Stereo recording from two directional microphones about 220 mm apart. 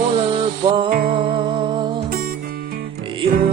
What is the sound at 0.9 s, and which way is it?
Music, 40° right (ahead or behind).